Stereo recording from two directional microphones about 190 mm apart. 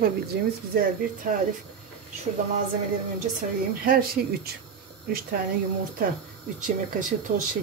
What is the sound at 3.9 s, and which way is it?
Speech, 50° right (ahead or behind).